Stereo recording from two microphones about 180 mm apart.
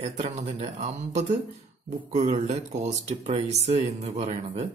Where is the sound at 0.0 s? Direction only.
35° right (ahead or behind).